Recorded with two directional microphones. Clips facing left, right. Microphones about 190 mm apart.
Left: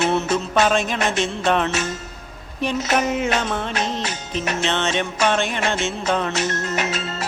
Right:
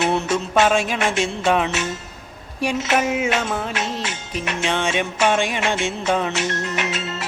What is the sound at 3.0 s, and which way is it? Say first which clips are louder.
Music: even; 5° right (ahead or behind).